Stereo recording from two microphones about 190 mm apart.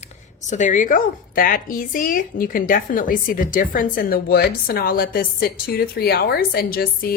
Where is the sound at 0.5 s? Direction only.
40° left (ahead or behind).